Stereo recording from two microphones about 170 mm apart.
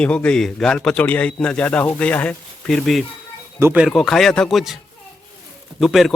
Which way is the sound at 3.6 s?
10° right (ahead or behind).